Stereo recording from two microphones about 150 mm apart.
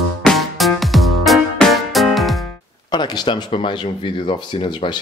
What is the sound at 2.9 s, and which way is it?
Speech, 30° left (ahead or behind).